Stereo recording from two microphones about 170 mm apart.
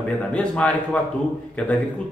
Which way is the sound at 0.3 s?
5° left (ahead or behind).